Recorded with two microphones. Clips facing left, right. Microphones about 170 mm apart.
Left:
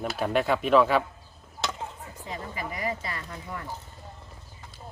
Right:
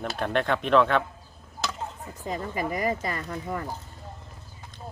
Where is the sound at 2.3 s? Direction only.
45° right (ahead or behind).